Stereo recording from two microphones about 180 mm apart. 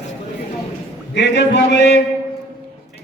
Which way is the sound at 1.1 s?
70° left (ahead or behind).